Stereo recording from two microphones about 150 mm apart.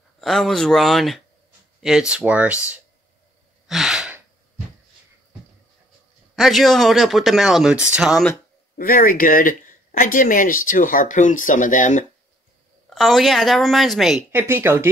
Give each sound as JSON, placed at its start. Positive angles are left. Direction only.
{"t": 0.2, "sound": "speech", "side_deg": 0}
{"t": 3.6, "sound": "sigh", "side_deg": 0}
{"t": 6.3, "sound": "speech", "side_deg": 0}
{"t": 8.7, "sound": "speech", "side_deg": 70}
{"t": 12.9, "sound": "speech", "side_deg": 0}
{"t": 14.3, "sound": "speech", "side_deg": -15}